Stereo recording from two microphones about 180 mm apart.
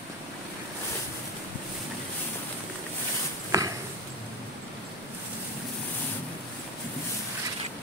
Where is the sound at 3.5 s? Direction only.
20° right (ahead or behind).